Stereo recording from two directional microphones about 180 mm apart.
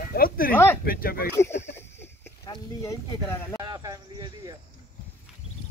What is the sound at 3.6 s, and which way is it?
Speech, 20° right (ahead or behind).